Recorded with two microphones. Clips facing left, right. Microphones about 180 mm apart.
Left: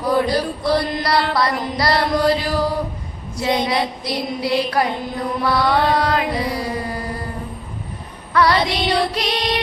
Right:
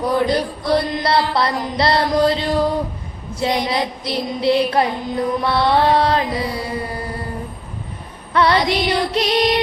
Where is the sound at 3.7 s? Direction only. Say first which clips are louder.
Even; 25° right (ahead or behind).